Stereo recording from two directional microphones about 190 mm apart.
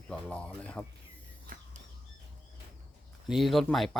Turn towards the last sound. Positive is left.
turn(degrees=0)  # may be behind; listen again after turning